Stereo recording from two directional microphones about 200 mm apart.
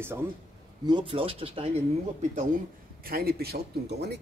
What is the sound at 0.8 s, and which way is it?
Speech, 25° right (ahead or behind).